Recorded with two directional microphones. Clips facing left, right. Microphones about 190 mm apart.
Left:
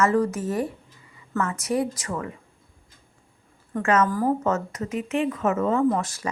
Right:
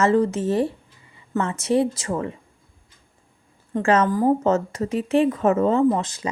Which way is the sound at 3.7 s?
30° right (ahead or behind).